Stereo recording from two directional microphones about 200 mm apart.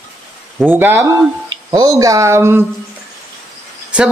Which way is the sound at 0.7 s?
10° right (ahead or behind).